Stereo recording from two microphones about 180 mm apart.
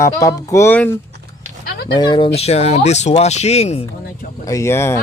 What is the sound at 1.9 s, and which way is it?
Speech, 25° left (ahead or behind).